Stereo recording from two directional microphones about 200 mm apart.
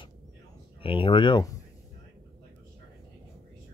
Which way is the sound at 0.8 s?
25° left (ahead or behind).